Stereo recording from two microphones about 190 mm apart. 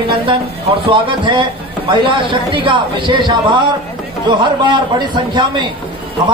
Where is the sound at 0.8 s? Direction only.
25° right (ahead or behind).